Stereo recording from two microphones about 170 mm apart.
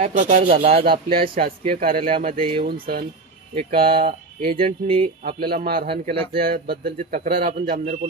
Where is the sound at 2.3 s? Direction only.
30° right (ahead or behind).